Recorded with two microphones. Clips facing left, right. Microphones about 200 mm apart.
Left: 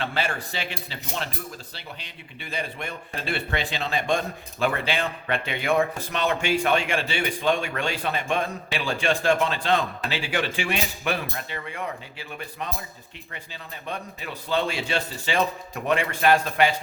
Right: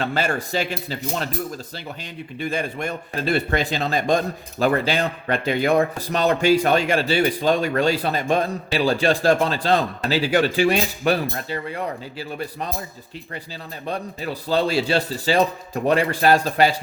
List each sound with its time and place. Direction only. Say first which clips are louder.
0.0 s speech: right 5 dB; 45° right (ahead or behind)
2.4 s speech: right 7 dB; 45° right (ahead or behind)
13.8 s speech: right 7 dB; 35° right (ahead or behind)